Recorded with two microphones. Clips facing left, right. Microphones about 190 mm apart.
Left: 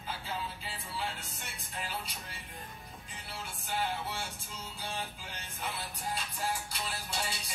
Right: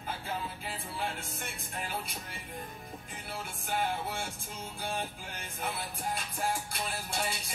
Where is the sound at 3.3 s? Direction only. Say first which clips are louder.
Right 2 dB; 50° right (ahead or behind).